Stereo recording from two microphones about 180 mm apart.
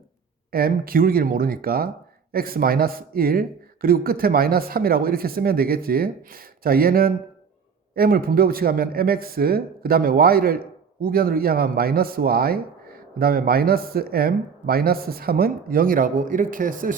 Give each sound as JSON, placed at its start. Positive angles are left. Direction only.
{"t": 0.5, "sound": "speech", "side_deg": -55}